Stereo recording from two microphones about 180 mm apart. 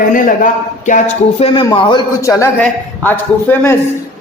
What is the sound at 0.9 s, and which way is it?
A man's voice, 40° left (ahead or behind).